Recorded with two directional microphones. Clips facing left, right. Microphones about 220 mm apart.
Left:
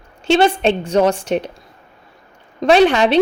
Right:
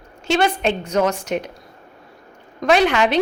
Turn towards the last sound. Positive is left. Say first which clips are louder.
# left 4 dB
turn(degrees=30)  # may be behind; listen again after turning